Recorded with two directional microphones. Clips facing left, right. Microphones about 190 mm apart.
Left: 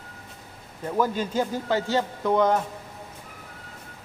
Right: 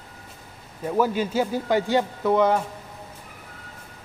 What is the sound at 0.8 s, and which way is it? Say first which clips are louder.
A man's voice: right 3 dB; 10° right (ahead or behind).